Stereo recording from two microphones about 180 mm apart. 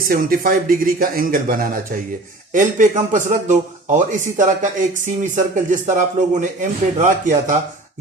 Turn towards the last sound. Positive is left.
turn(degrees=-45)  # may be behind; listen again after turning